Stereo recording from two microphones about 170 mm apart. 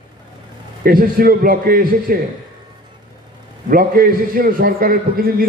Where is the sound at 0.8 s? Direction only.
60° right (ahead or behind).